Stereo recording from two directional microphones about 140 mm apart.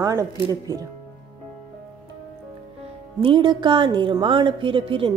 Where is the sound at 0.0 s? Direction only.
25° right (ahead or behind).